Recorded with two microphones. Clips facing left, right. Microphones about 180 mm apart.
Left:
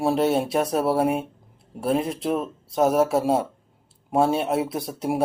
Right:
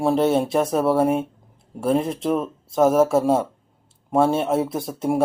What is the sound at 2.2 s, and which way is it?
Speech, 40° right (ahead or behind).